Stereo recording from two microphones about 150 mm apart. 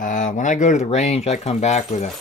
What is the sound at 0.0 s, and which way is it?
Speech, 60° left (ahead or behind).